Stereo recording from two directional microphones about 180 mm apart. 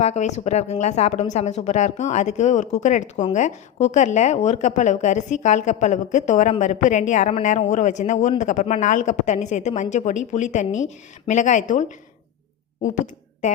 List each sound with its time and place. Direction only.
0.0 s a woman's voice: 40° left (ahead or behind)